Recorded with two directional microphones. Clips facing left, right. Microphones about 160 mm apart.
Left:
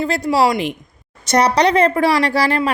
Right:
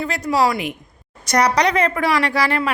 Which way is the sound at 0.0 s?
30° left (ahead or behind).